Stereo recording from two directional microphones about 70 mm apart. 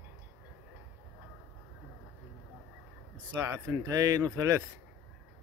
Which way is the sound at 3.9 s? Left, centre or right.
Right.